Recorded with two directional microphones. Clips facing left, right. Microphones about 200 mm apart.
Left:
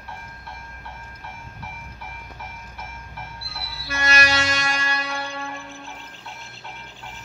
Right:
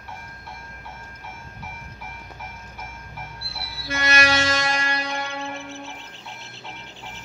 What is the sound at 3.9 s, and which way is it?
Music, 20° right (ahead or behind).